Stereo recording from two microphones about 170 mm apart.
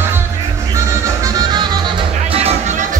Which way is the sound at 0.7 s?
20° right (ahead or behind).